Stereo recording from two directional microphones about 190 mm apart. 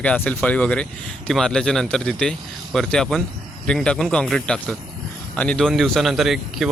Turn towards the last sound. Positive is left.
turn(degrees=0)  # may be behind; listen again after turning